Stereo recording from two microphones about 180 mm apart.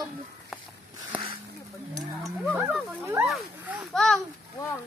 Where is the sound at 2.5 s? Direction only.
5° right (ahead or behind).